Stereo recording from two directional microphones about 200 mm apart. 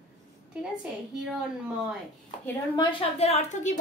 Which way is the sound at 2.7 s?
25° left (ahead or behind).